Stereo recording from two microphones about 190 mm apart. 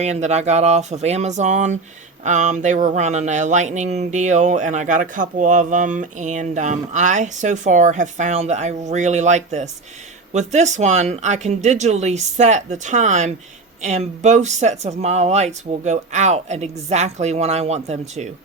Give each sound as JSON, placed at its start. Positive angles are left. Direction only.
{"t": 0.0, "sound": "speech", "side_deg": -35}